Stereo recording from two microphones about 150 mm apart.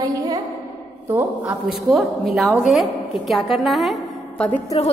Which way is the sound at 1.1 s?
10° right (ahead or behind).